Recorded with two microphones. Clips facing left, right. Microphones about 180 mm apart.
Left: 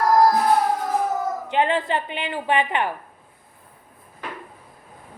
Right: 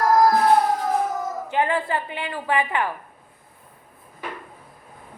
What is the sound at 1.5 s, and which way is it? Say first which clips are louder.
A woman's voice: left 1 dB; 20° left (ahead or behind).